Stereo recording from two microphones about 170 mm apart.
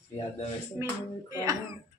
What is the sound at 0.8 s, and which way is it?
Speech, 20° right (ahead or behind).